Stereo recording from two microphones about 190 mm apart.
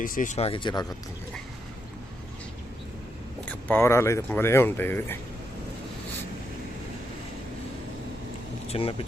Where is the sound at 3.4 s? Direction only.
10° left (ahead or behind).